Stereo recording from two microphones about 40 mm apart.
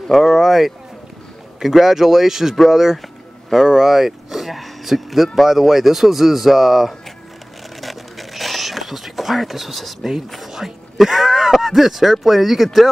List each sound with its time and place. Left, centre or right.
0.1 s speech: centre
7.8 s a sound: centre
10.5 s speech: centre